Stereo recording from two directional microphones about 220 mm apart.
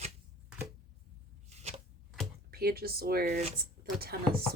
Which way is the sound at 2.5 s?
45° right (ahead or behind).